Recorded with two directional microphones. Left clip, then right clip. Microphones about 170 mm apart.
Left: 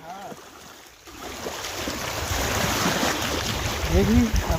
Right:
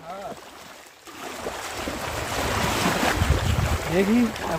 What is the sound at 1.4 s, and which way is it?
Boat, 45° left (ahead or behind).